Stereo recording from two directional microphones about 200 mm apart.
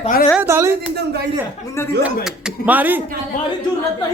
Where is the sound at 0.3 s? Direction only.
15° right (ahead or behind).